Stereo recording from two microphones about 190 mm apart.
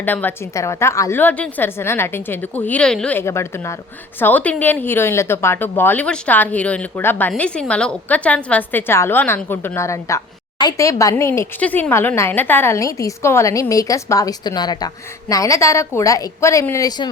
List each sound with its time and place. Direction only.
0.0 s speech: 10° left (ahead or behind)